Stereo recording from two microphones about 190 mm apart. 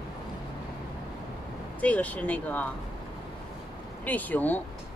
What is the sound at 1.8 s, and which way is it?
Speech, 10° left (ahead or behind).